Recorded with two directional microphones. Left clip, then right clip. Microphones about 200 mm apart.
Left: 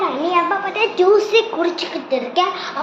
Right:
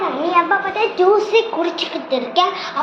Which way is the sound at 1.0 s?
15° left (ahead or behind).